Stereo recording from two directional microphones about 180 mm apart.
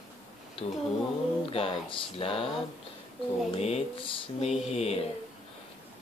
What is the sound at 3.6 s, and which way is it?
Speech, 35° left (ahead or behind).